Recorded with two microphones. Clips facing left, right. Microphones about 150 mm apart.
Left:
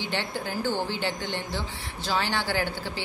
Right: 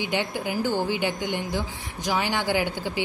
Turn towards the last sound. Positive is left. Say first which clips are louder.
# right 4 dB
turn(degrees=-15)  # may be behind; listen again after turning